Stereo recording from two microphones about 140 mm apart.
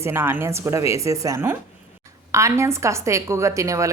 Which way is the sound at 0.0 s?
15° right (ahead or behind).